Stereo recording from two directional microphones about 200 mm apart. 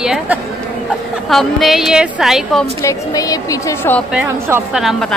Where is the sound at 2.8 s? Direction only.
15° left (ahead or behind).